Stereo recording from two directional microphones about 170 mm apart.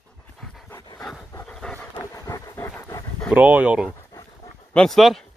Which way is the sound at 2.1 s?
20° left (ahead or behind).